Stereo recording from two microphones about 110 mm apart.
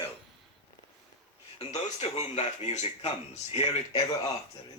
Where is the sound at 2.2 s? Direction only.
90° left; by 4.1 s 70° left (ahead or behind).